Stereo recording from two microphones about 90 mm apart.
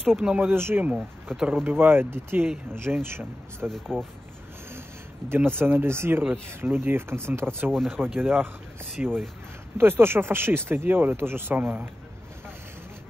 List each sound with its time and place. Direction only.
0.2 s speech: 10° right (ahead or behind)
0.5 s speech: 25° right (ahead or behind)
0.8 s speech: 5° right (ahead or behind)
1.6 s speech: 25° right (ahead or behind)
3.6 s speech: 5° left (ahead or behind)
5.3 s speech: 25° right (ahead or behind)
7.7 s speech: 5° left (ahead or behind)
8.2 s speech: 20° right (ahead or behind)
9.8 s speech: 25° right (ahead or behind)